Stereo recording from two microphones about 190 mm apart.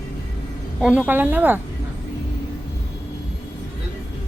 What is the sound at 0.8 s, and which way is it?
Speech, 5° right (ahead or behind).